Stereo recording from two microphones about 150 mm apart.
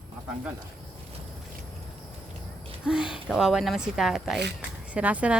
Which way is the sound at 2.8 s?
5° right (ahead or behind).